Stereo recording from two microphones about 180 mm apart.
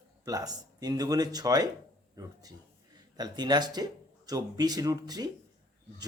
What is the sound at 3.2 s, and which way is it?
Speech, 25° right (ahead or behind).